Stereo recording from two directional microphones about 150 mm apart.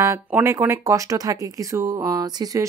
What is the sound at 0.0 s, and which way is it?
Speech, 20° right (ahead or behind).